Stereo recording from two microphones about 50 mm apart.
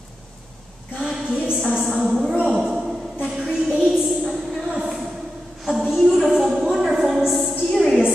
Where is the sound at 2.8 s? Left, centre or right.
Centre.